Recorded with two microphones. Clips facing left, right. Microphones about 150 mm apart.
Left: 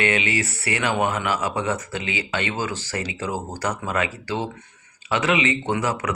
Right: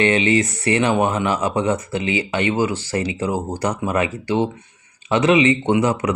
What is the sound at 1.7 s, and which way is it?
Speech, 35° right (ahead or behind).